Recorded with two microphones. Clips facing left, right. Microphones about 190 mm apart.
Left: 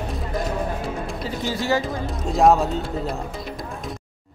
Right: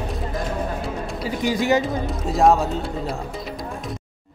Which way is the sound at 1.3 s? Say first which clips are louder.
Right 4 dB; 15° right (ahead or behind).